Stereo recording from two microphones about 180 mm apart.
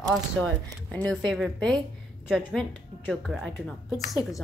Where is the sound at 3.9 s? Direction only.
20° left (ahead or behind).